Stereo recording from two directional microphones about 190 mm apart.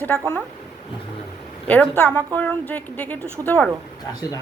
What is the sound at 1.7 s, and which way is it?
A woman's voice, 10° left (ahead or behind).